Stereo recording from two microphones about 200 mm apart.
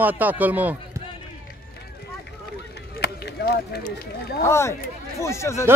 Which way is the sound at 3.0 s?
55° left (ahead or behind).